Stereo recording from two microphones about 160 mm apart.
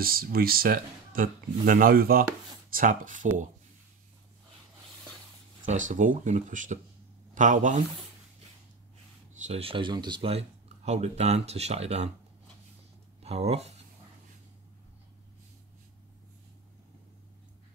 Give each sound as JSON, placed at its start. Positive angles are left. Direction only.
{"t": 0.0, "sound": "speech", "side_deg": -65}
{"t": 5.7, "sound": "speech", "side_deg": -50}
{"t": 9.4, "sound": "speech", "side_deg": -40}
{"t": 10.9, "sound": "speech", "side_deg": -45}
{"t": 13.2, "sound": "speech", "side_deg": -40}